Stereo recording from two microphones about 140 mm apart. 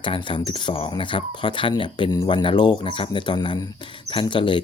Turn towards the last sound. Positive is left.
turn(degrees=35)  # may be behind; listen again after turning